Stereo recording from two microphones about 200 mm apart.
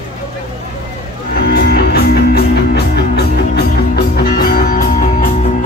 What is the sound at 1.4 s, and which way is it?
Music, 50° left (ahead or behind).